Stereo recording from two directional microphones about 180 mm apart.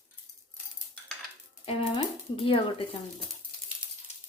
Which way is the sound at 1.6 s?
30° left (ahead or behind).